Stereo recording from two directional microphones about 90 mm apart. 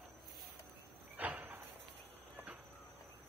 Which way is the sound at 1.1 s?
20° right (ahead or behind).